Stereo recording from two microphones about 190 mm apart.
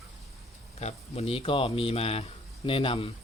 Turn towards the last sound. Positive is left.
turn(degrees=30)  # may be behind; listen again after turning